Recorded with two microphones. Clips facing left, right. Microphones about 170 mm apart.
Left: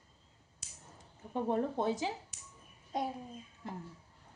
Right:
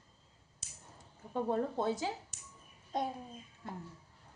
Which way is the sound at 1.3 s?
20° left (ahead or behind).